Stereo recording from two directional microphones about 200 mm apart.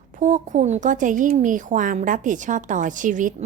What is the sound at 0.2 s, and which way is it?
Speech, 40° right (ahead or behind).